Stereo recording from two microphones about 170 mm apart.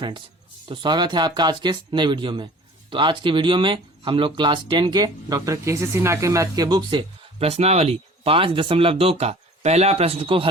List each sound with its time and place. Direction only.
0.6 s speech: 25° right (ahead or behind)
7.3 s speech: 35° right (ahead or behind)